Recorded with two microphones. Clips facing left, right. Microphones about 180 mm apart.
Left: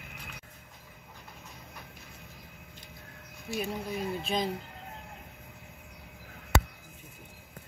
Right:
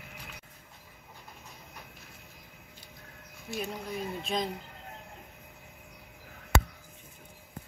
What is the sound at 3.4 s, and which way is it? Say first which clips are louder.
Speech: left 2 dB; centre (ahead or behind).